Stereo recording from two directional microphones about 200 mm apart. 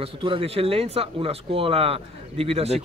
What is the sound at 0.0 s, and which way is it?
A man's voice, 25° right (ahead or behind).